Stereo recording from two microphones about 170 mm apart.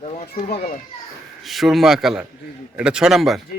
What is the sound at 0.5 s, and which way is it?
Speech, 35° left (ahead or behind).